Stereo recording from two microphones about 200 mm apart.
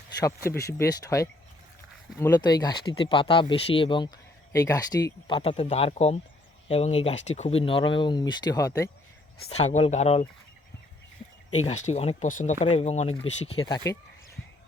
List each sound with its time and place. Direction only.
0.7 s speech: 15° left (ahead or behind)
5.4 s speech: 30° left (ahead or behind)
9.5 s speech: 35° left (ahead or behind)
11.6 s speech: 35° left (ahead or behind)